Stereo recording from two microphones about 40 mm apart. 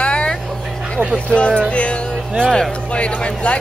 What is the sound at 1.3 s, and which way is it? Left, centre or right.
Speech, left.